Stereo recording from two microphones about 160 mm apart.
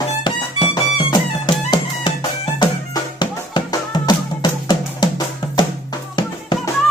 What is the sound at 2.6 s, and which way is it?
Music, 25° left (ahead or behind).